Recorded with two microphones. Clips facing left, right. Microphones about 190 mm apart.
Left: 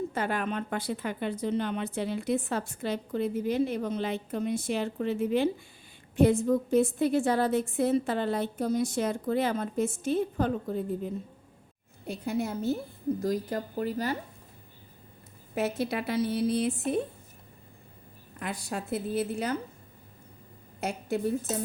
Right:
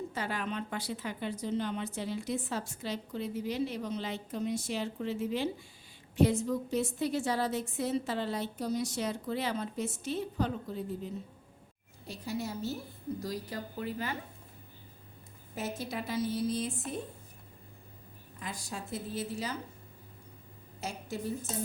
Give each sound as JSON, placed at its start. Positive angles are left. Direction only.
{"t": 0.1, "sound": "a woman's voice", "side_deg": 55}
{"t": 15.5, "sound": "a woman's voice", "side_deg": 65}
{"t": 18.3, "sound": "a woman's voice", "side_deg": 60}
{"t": 20.8, "sound": "a woman's voice", "side_deg": 60}